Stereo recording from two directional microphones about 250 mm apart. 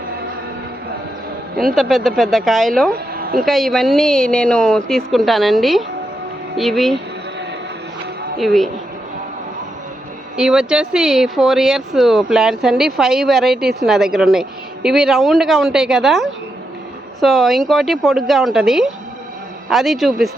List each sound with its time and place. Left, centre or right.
1.7 s speech: centre
3.2 s a sound: right
3.4 s speech: centre
8.4 s speech: centre
10.3 s speech: centre